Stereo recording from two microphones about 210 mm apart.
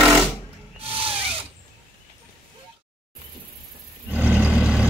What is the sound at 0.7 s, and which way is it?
Rub, 25° right (ahead or behind).